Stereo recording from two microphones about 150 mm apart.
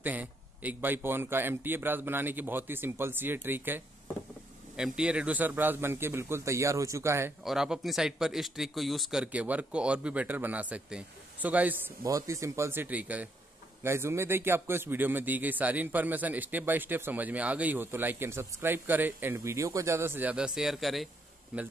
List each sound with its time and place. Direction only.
0.0 s a man's voice: 10° right (ahead or behind)
7.4 s a man's voice: 5° right (ahead or behind)
12.1 s a man's voice: 20° right (ahead or behind)